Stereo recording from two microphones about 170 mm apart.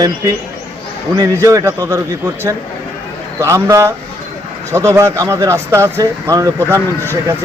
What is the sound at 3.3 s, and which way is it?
Speech, 20° right (ahead or behind).